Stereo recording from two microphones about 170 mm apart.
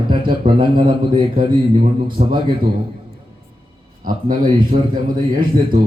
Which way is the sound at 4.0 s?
55° right (ahead or behind).